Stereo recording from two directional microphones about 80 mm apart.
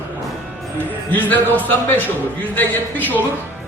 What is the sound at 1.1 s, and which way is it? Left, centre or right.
A man's voice, left.